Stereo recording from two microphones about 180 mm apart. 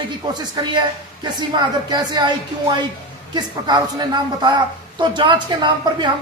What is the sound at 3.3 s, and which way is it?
Speech, 25° right (ahead or behind).